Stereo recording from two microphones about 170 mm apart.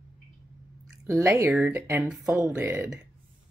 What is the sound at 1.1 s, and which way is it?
A woman's voice, 15° right (ahead or behind).